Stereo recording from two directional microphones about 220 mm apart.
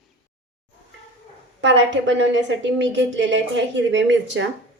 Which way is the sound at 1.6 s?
55° right (ahead or behind).